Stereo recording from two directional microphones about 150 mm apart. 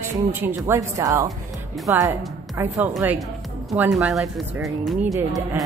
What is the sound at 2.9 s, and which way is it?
A woman's voice, centre (ahead or behind).